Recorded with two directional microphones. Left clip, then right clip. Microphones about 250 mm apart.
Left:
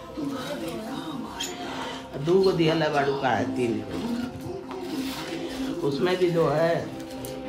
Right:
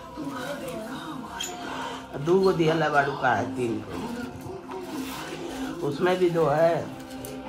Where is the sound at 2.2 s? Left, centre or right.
Centre.